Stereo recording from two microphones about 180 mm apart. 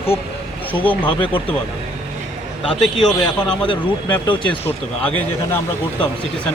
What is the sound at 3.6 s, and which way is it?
Speech, 25° left (ahead or behind).